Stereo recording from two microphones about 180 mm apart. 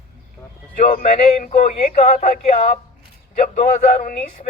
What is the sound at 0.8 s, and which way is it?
A man's voice, 45° left (ahead or behind).